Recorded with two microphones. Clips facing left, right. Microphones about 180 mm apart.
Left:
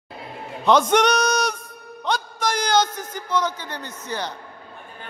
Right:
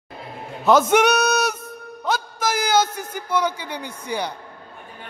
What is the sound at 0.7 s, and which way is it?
Music, 5° right (ahead or behind).